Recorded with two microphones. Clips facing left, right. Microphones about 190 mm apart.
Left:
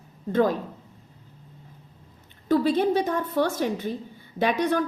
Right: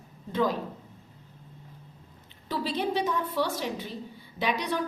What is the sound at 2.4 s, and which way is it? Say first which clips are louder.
A woman's voice: left 9 dB; 50° left (ahead or behind).